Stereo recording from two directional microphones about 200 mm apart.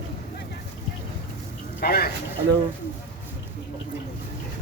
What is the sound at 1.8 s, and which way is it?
Speech, 50° left (ahead or behind).